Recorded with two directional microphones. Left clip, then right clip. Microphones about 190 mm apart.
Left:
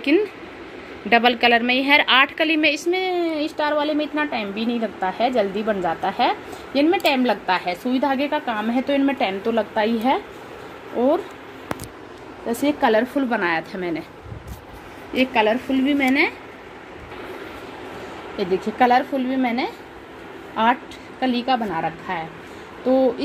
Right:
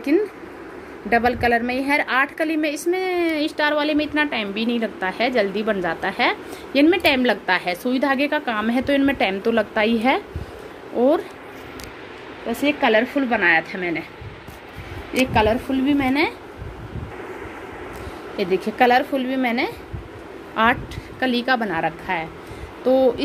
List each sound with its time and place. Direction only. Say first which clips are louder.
1.1 s a woman's voice: left 2 dB; centre (ahead or behind)
3.2 s a woman's voice: right 2 dB; 25° right (ahead or behind)
12.4 s a woman's voice: even; 10° left (ahead or behind)
15.1 s a woman's voice: even; 10° right (ahead or behind)
18.4 s a woman's voice: right 1 dB; centre (ahead or behind)
21.3 s a woman's voice: right 1 dB; 30° right (ahead or behind)
22.8 s a woman's voice: right 2 dB; centre (ahead or behind)